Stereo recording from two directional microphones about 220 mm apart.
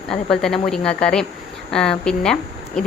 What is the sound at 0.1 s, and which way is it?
Speech, centre (ahead or behind).